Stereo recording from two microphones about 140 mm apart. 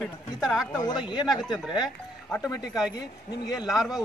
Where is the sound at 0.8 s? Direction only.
30° left (ahead or behind).